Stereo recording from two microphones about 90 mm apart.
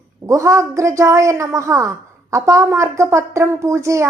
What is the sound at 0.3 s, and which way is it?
A woman's voice, 35° right (ahead or behind).